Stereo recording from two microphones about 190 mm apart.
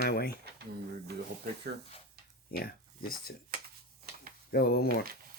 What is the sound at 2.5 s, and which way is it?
Speech, 55° left (ahead or behind).